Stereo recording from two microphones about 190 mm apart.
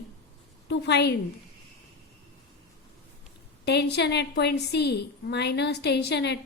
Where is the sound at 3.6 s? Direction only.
60° left (ahead or behind).